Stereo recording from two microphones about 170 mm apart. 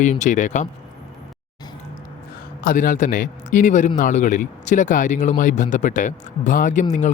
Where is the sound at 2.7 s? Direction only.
50° left (ahead or behind).